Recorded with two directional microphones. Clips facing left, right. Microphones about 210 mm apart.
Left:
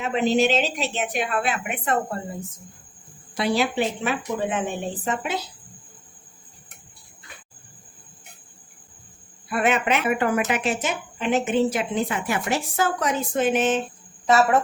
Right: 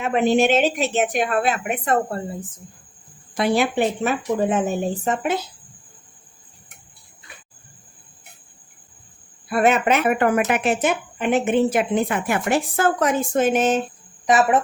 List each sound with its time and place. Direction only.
0.0 s a woman's voice: 55° right (ahead or behind)
3.3 s a woman's voice: 50° right (ahead or behind)
9.5 s a woman's voice: 40° right (ahead or behind)
14.3 s speech: 15° right (ahead or behind)